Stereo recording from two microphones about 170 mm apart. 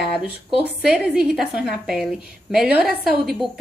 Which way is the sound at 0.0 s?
Centre (ahead or behind).